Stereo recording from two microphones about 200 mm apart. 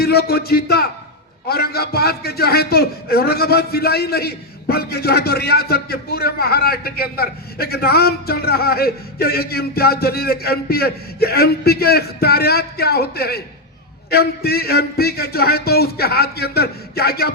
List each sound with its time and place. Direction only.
0.0 s a man's voice: 50° left (ahead or behind)